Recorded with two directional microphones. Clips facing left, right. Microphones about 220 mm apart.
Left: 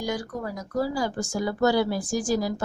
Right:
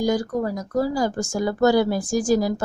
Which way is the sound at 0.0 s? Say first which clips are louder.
Right 8 dB; 40° right (ahead or behind).